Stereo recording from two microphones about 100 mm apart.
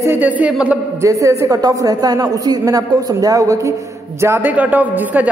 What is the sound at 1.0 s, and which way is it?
A man's voice, 30° right (ahead or behind).